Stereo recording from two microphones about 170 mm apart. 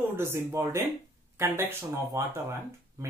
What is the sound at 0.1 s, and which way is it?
Speech, 15° right (ahead or behind).